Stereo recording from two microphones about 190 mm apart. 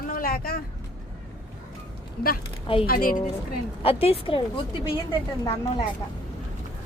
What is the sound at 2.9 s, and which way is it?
Speech, 50° left (ahead or behind).